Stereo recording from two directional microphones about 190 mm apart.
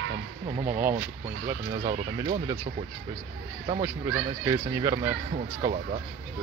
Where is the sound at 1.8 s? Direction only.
25° right (ahead or behind).